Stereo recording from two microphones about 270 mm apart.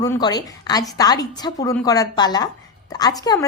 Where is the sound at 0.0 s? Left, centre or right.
Centre.